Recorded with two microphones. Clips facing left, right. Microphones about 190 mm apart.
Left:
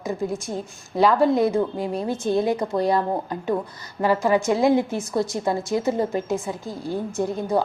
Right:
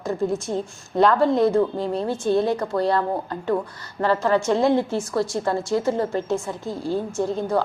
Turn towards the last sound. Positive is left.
turn(degrees=15)  # may be behind; listen again after turning